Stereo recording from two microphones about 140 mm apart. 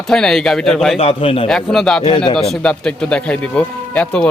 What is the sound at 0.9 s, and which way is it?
Speech, 40° left (ahead or behind).